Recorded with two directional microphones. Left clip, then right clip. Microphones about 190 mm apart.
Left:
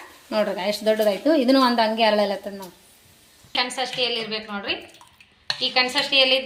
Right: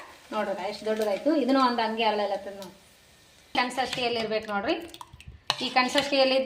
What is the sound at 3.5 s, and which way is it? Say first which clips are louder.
A woman's voice: left 3 dB; 40° right (ahead or behind).